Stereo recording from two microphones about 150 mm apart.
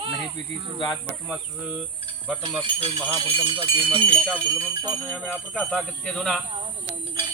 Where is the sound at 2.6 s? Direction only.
35° right (ahead or behind).